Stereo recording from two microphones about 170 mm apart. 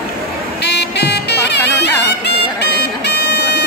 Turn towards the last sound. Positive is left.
turn(degrees=75)  # may be behind; listen again after turning